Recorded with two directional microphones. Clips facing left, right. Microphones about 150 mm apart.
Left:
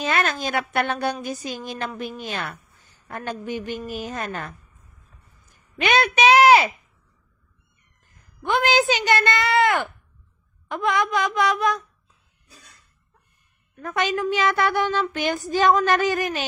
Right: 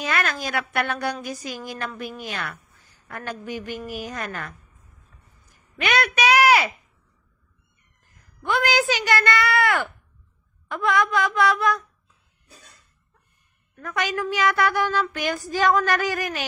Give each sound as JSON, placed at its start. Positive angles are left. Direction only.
{"t": 0.0, "sound": "a woman's voice", "side_deg": 25}
{"t": 5.8, "sound": "speech", "side_deg": 25}
{"t": 8.4, "sound": "a woman's voice", "side_deg": 20}
{"t": 13.7, "sound": "a woman's voice", "side_deg": 25}